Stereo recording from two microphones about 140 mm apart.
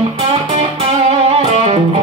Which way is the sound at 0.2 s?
45° right (ahead or behind).